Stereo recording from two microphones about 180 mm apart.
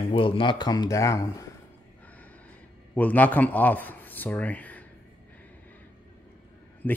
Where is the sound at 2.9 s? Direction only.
10° left (ahead or behind).